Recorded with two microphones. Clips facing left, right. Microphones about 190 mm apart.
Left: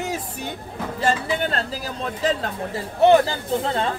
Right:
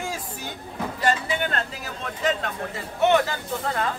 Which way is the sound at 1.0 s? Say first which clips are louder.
Left 2 dB; 30° left (ahead or behind).